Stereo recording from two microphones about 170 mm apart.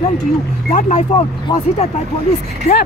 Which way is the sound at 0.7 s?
40° left (ahead or behind).